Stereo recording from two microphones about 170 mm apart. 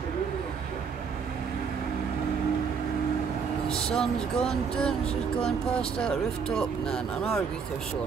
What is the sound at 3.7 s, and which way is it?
Speech, 5° left (ahead or behind).